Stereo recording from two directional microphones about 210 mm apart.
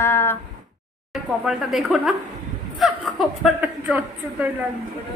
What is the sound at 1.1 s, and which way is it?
A woman's voice, centre (ahead or behind).